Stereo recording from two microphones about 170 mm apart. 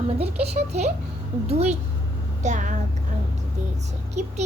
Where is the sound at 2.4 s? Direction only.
45° right (ahead or behind).